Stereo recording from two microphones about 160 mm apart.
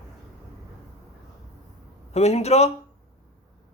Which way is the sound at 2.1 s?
40° left (ahead or behind).